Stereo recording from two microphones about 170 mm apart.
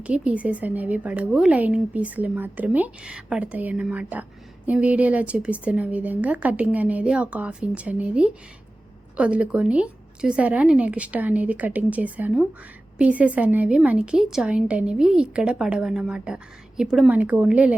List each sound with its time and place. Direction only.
0.0 s speech: 5° right (ahead or behind)